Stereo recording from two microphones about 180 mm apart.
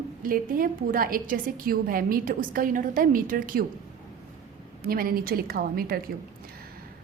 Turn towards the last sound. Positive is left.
turn(degrees=-55)  # may be behind; listen again after turning